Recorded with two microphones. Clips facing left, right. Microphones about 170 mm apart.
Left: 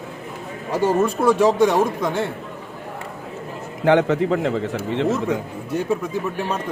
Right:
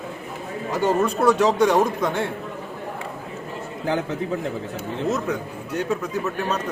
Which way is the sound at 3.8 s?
80° left.